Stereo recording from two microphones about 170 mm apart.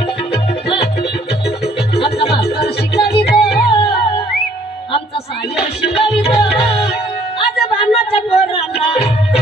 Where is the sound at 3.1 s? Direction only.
30° left (ahead or behind).